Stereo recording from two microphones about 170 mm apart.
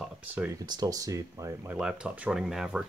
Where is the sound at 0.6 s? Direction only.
25° right (ahead or behind).